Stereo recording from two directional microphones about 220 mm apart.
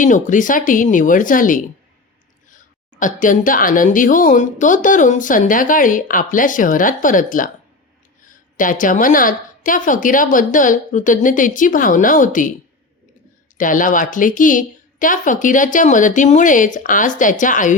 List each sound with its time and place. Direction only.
0.0 s a woman's voice: 35° left (ahead or behind)
13.6 s a woman's voice: 35° left (ahead or behind)